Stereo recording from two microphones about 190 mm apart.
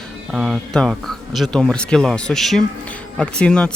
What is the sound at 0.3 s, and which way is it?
Speech, 5° right (ahead or behind).